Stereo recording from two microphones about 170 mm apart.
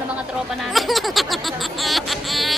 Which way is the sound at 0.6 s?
Centre (ahead or behind).